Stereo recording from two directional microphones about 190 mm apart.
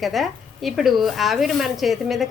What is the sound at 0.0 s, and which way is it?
Speech, centre (ahead or behind).